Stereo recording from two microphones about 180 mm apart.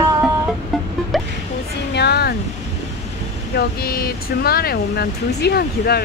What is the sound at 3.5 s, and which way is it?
Speech, 60° left (ahead or behind).